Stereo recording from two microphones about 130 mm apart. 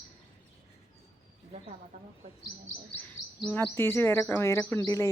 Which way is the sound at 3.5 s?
15° left (ahead or behind).